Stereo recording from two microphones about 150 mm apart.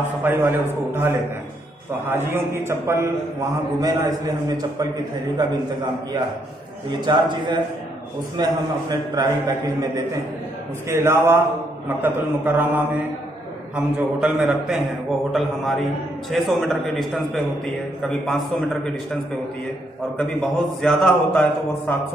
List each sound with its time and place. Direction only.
0.2 s a man's voice: 15° right (ahead or behind)
7.1 s a man's voice: 30° right (ahead or behind); by 18.8 s centre (ahead or behind)
20.2 s a man's voice: 5° left (ahead or behind)